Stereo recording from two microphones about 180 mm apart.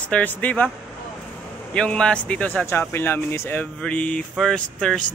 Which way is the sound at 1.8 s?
5° left (ahead or behind).